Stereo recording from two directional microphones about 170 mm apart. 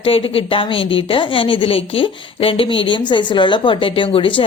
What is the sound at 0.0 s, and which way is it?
Speech, 35° left (ahead or behind).